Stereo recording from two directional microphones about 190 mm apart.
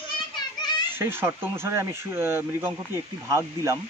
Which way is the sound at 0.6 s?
20° left (ahead or behind).